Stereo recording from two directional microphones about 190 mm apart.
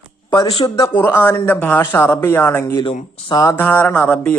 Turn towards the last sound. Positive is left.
turn(degrees=10)  # may be behind; listen again after turning